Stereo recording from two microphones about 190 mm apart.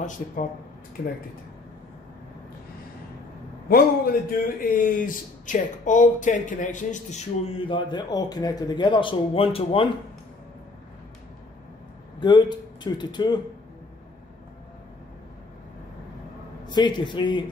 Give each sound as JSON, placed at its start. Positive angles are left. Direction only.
{"t": 0.2, "sound": "a man's voice", "side_deg": 40}
{"t": 3.6, "sound": "a man's voice", "side_deg": 50}
{"t": 12.2, "sound": "speech", "side_deg": 25}
{"t": 16.6, "sound": "speech", "side_deg": 25}